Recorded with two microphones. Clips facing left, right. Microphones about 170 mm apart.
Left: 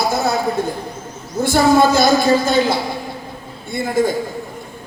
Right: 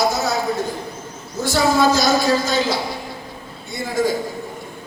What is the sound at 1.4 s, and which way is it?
A man's voice, 55° left (ahead or behind).